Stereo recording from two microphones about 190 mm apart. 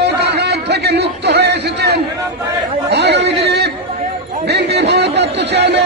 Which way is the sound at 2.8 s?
65° right (ahead or behind).